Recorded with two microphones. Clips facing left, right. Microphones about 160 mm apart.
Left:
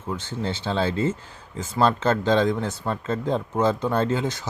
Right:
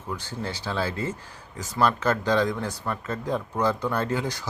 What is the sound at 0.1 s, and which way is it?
Speech, 20° left (ahead or behind).